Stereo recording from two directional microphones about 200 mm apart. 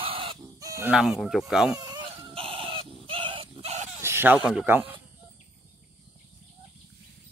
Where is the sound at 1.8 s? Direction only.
20° right (ahead or behind).